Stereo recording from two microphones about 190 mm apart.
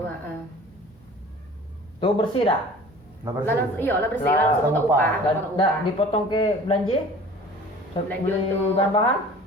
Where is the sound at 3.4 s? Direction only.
10° left (ahead or behind).